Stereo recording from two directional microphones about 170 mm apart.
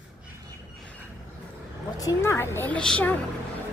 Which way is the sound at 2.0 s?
15° left (ahead or behind).